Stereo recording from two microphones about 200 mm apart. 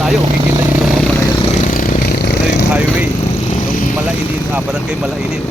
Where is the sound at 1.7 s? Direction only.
50° left (ahead or behind).